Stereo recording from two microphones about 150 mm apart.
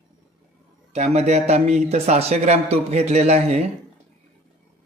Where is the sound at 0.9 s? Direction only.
45° right (ahead or behind).